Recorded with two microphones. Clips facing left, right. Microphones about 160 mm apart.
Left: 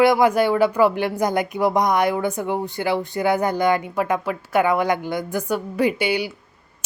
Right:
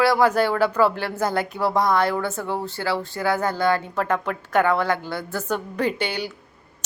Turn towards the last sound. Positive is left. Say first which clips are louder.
# left 4 dB
turn(degrees=10)  # may be behind; listen again after turning